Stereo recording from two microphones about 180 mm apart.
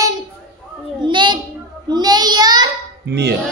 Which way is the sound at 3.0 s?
65° right (ahead or behind).